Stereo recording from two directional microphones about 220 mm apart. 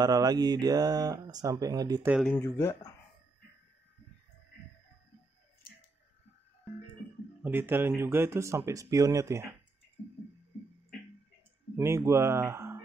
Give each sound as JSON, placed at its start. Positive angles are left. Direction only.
{"t": 0.0, "sound": "speech", "side_deg": -15}
{"t": 2.1, "sound": "speech", "side_deg": 5}
{"t": 7.4, "sound": "speech", "side_deg": -10}
{"t": 11.7, "sound": "speech", "side_deg": -10}